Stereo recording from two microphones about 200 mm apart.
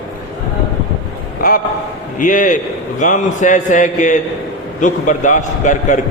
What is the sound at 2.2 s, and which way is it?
A man's voice, 40° left (ahead or behind).